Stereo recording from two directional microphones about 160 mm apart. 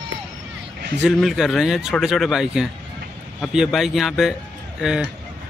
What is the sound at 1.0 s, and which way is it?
A man's voice, centre (ahead or behind).